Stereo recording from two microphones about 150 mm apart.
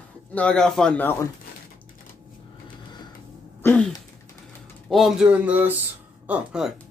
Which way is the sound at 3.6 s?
10° left (ahead or behind).